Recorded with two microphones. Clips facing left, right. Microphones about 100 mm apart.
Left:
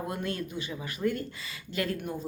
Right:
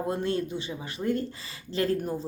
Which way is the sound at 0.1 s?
30° right (ahead or behind).